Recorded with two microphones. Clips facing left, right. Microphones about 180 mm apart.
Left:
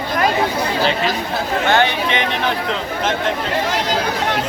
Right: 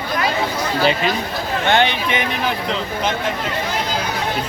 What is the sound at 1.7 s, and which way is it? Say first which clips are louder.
Speech: even; 20° right (ahead or behind).